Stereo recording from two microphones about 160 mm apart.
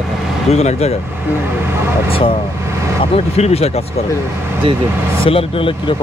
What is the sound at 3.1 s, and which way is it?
Speech, 40° left (ahead or behind).